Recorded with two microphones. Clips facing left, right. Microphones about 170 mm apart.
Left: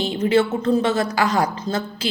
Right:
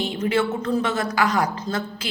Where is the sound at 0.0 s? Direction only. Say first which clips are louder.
Left 4 dB; 30° left (ahead or behind).